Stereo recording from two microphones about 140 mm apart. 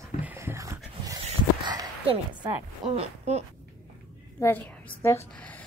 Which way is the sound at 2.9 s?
45° right (ahead or behind).